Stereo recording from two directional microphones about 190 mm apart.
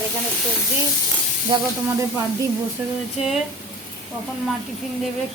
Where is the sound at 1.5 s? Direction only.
25° right (ahead or behind).